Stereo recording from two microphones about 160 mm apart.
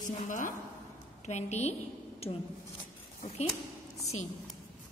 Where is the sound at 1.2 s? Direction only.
45° left (ahead or behind).